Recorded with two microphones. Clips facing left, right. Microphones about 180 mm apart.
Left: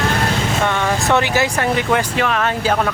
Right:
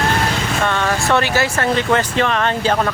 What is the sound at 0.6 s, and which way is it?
Vehicle, 15° left (ahead or behind).